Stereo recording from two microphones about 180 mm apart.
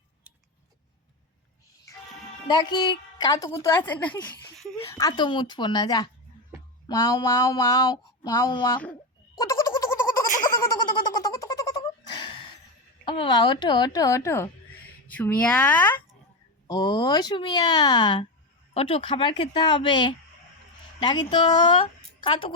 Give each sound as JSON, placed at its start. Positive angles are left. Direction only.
{"t": 2.5, "sound": "a woman's voice", "side_deg": 25}
{"t": 9.3, "sound": "a sound", "side_deg": 20}
{"t": 13.1, "sound": "a woman's voice", "side_deg": 25}
{"t": 16.6, "sound": "a woman's voice", "side_deg": 25}